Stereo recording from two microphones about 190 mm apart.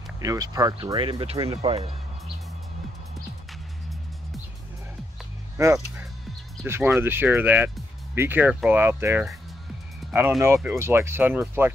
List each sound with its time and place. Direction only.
0.2 s speech: 20° right (ahead or behind)
6.6 s speech: 10° right (ahead or behind)
10.4 s speech: 15° right (ahead or behind)